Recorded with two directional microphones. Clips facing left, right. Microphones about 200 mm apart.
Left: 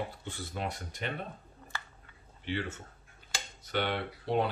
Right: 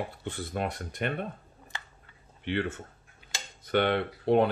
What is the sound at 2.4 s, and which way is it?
Speech, 60° right (ahead or behind).